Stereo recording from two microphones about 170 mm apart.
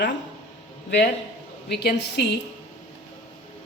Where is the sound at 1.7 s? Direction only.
80° left.